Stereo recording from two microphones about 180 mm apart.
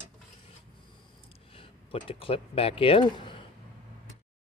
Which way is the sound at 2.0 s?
30° left (ahead or behind).